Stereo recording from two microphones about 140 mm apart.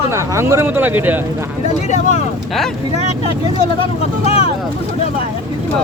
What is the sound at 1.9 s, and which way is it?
Speech, 55° left (ahead or behind).